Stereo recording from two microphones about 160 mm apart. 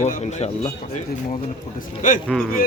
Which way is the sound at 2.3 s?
5° left (ahead or behind).